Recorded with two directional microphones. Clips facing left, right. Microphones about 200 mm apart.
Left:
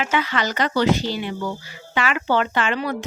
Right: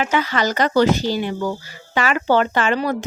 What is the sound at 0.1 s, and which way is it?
Speech, 40° right (ahead or behind).